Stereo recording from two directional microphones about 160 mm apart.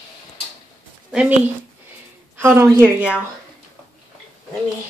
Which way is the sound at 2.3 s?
15° right (ahead or behind).